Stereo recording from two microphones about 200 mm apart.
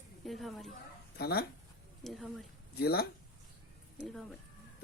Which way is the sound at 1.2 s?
50° left (ahead or behind).